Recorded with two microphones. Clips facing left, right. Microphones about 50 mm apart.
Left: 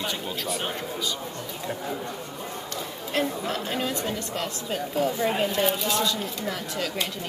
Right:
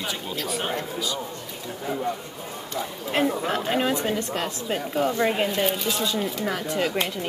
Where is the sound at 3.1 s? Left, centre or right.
Centre.